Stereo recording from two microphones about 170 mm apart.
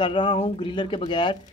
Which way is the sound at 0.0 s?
30° left (ahead or behind).